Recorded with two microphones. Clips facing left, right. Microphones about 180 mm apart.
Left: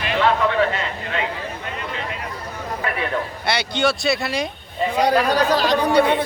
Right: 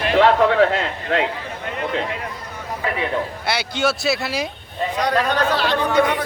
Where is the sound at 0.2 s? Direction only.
75° right (ahead or behind).